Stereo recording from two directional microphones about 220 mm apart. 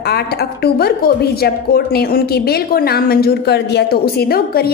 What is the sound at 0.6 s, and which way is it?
A woman's voice, 45° left (ahead or behind).